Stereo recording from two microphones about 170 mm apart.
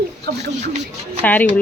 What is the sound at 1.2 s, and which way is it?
Speech, 10° left (ahead or behind).